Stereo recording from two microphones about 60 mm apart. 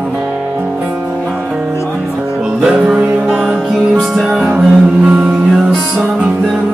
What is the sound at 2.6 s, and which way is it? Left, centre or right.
Music, centre.